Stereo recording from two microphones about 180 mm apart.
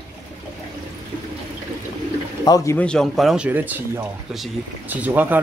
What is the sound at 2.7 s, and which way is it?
Speech, 5° left (ahead or behind).